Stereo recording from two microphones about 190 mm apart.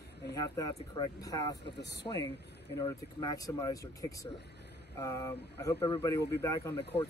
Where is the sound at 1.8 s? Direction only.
65° left (ahead or behind).